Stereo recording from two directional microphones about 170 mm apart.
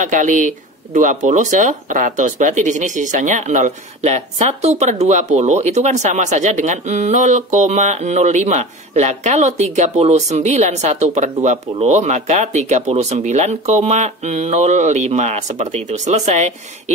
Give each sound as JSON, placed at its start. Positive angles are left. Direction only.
{"t": 0.0, "sound": "speech", "side_deg": -45}